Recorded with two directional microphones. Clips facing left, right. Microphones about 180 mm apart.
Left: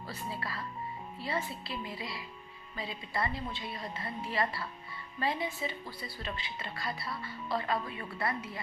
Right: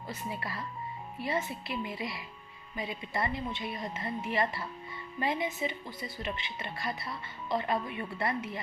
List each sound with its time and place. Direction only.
0.1 s speech: 20° right (ahead or behind)